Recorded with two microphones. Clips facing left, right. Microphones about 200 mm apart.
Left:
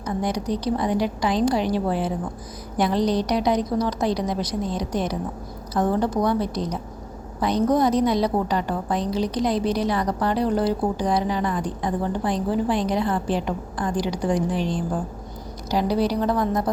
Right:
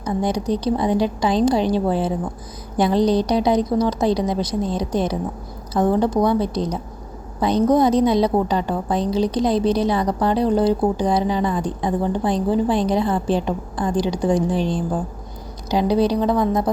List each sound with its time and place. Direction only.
0.0 s a woman's voice: 25° right (ahead or behind)
3.2 s a woman's voice: 25° right (ahead or behind)
7.7 s a woman's voice: 25° right (ahead or behind)
15.7 s a woman's voice: 20° right (ahead or behind)